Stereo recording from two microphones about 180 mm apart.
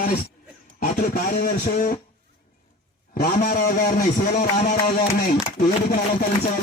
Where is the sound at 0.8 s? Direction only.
50° left (ahead or behind).